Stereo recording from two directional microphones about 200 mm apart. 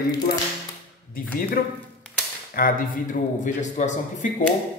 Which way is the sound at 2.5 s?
45° left (ahead or behind).